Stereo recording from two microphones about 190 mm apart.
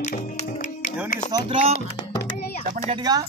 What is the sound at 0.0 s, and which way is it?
Music, 40° left (ahead or behind).